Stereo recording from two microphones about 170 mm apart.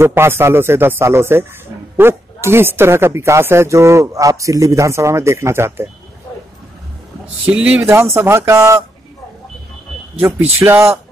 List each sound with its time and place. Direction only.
0.0 s speech: 15° right (ahead or behind)
7.4 s speech: 10° right (ahead or behind)
10.2 s speech: 15° right (ahead or behind)